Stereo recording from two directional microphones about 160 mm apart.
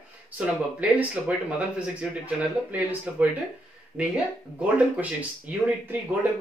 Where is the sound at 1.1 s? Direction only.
10° right (ahead or behind).